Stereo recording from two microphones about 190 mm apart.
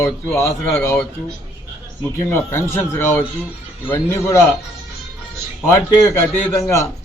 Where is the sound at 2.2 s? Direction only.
15° left (ahead or behind).